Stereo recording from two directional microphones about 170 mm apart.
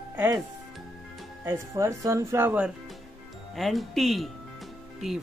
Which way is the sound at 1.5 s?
15° right (ahead or behind).